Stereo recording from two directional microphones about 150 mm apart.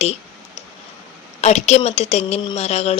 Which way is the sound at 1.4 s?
45° left (ahead or behind).